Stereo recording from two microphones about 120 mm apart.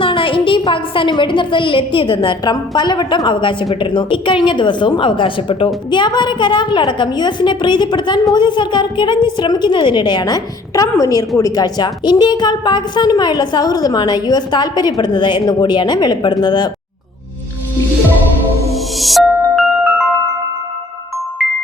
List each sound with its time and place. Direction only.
0.0 s a woman's voice: 45° left (ahead or behind)
18.7 s music: centre (ahead or behind)